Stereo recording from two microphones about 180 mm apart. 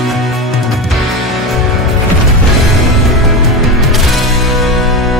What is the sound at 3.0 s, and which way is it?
Music, centre (ahead or behind).